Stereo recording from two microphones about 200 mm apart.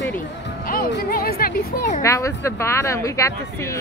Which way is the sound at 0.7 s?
45° left (ahead or behind).